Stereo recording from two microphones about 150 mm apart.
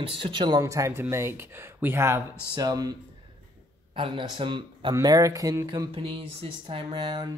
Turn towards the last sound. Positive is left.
turn(degrees=-30)  # may be behind; listen again after turning